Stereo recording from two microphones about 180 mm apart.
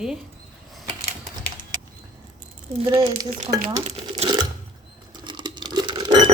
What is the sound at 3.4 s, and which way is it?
Speech, 20° right (ahead or behind).